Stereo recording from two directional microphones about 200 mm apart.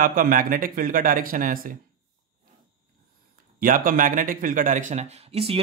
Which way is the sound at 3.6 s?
45° right (ahead or behind).